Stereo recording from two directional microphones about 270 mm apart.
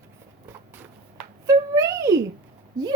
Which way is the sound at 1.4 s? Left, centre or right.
Centre.